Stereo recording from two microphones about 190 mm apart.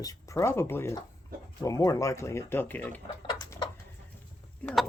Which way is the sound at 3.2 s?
25° left (ahead or behind).